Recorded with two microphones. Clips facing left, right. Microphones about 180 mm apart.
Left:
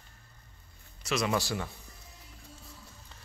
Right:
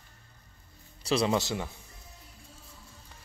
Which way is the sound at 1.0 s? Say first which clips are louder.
Right 3 dB; 30° right (ahead or behind).